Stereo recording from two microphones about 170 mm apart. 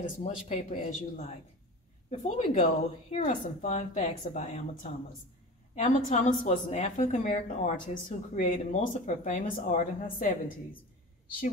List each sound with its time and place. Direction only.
0.0 s a woman's voice: 45° left (ahead or behind)
5.8 s speech: 45° left (ahead or behind)